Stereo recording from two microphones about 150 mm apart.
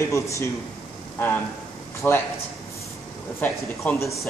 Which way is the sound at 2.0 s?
5° left (ahead or behind).